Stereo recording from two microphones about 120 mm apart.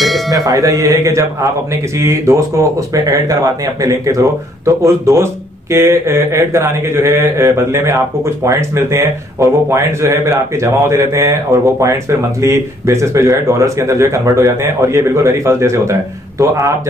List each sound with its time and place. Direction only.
0.3 s a man's voice: 30° right (ahead or behind)